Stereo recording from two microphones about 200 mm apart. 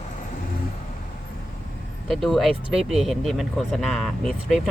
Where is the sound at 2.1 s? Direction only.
Centre (ahead or behind).